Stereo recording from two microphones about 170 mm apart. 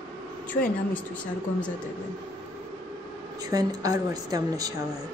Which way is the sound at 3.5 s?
20° right (ahead or behind).